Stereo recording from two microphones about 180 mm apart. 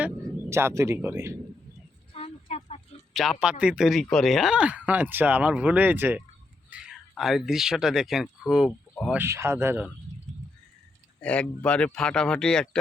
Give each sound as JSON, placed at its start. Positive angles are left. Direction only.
{"t": 0.5, "sound": "speech", "side_deg": -15}
{"t": 2.1, "sound": "a sound", "side_deg": 35}
{"t": 3.2, "sound": "speech", "side_deg": 0}
{"t": 9.2, "sound": "speech", "side_deg": -15}
{"t": 11.2, "sound": "speech", "side_deg": 5}